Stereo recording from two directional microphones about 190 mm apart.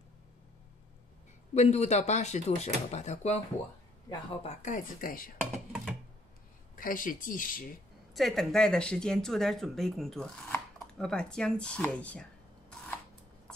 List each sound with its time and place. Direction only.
1.5 s speech: 35° left (ahead or behind)
5.4 s a sound: 5° right (ahead or behind)
6.7 s speech: 45° left (ahead or behind)
8.1 s speech: centre (ahead or behind)